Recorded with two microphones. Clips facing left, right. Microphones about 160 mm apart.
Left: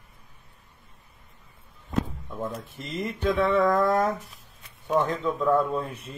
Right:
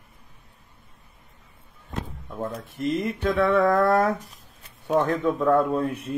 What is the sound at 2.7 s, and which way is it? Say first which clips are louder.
Speech: right 7 dB; 60° right (ahead or behind).